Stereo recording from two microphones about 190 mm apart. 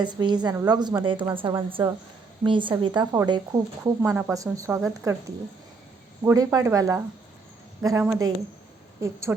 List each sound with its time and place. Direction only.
0.0 s a woman's voice: 25° right (ahead or behind)
6.2 s speech: 20° right (ahead or behind)